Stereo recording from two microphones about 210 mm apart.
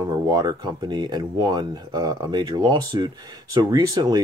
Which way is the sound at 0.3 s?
20° right (ahead or behind).